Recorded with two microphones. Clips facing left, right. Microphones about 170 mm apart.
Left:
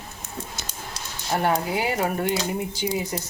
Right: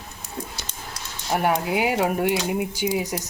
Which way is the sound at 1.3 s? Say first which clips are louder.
Right 1 dB; 10° right (ahead or behind).